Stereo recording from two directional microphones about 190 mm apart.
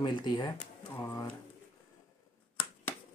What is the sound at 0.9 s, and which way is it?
Speech, 15° left (ahead or behind).